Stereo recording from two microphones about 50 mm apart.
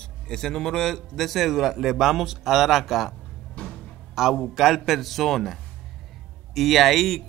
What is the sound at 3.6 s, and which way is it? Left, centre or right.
Music, left.